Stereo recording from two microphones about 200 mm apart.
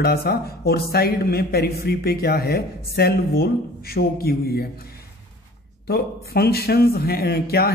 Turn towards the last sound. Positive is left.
turn(degrees=50)  # may be behind; listen again after turning